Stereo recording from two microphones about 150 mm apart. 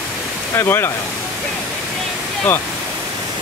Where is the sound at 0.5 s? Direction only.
15° left (ahead or behind).